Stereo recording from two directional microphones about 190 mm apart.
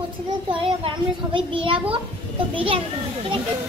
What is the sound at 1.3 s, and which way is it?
A child's voice, 25° right (ahead or behind).